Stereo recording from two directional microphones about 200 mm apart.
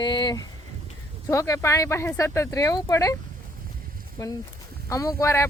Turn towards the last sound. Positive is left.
turn(degrees=15)  # may be behind; listen again after turning